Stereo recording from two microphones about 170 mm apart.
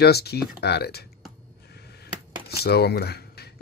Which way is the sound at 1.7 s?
70° left (ahead or behind).